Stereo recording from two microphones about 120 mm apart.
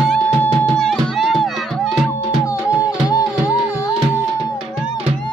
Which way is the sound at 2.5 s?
30° left (ahead or behind).